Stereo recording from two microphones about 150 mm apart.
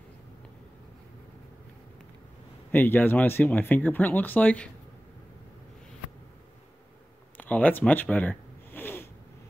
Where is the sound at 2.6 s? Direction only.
15° left (ahead or behind).